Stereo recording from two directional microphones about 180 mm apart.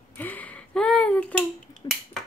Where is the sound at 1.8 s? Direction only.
25° left (ahead or behind).